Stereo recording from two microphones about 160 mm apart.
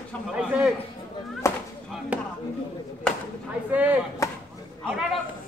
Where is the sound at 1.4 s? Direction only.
20° left (ahead or behind).